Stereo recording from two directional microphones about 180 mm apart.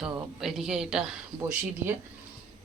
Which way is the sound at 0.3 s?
Centre (ahead or behind).